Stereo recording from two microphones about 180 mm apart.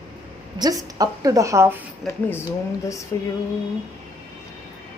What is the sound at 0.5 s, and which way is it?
A woman's voice, 20° right (ahead or behind).